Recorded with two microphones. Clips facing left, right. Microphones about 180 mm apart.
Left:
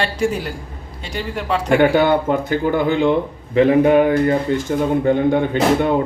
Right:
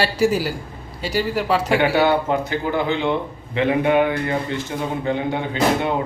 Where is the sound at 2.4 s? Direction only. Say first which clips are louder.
Left 4 dB; 50° left (ahead or behind).